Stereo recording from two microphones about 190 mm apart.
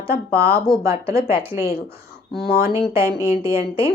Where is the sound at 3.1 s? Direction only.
15° right (ahead or behind).